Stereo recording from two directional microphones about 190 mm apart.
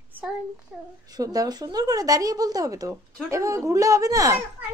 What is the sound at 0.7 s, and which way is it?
Speech, 5° right (ahead or behind).